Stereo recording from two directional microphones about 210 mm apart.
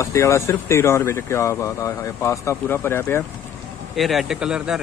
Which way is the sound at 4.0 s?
Centre (ahead or behind).